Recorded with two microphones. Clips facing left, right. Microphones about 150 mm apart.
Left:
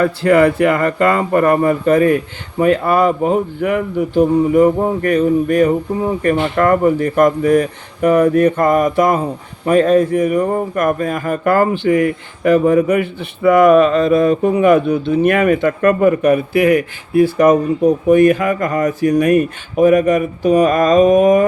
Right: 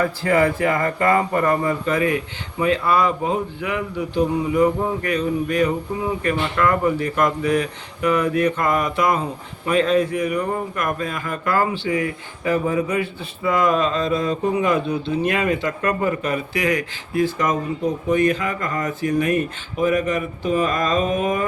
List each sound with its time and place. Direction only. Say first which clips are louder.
0.3 s a man's voice: left 7 dB; 75° left (ahead or behind); by 16.8 s 55° left (ahead or behind)
18.1 s a man's voice: left 7 dB; 50° left (ahead or behind)